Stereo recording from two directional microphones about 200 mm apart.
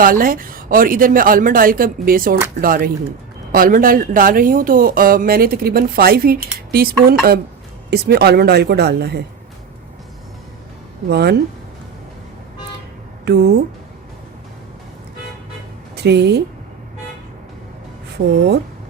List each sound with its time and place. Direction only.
0.0 s speech: 45° right (ahead or behind)
11.1 s speech: 55° right (ahead or behind)
13.2 s speech: 55° right (ahead or behind)
16.0 s speech: 55° right (ahead or behind)
18.1 s speech: 55° right (ahead or behind)